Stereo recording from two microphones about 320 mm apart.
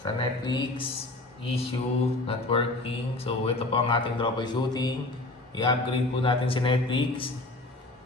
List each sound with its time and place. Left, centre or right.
0.0 s speech: centre